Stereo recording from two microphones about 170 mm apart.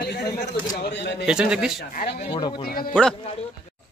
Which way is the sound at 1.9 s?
50° left (ahead or behind).